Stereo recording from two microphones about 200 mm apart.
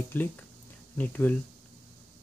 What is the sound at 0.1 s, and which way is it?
Speech, 10° left (ahead or behind).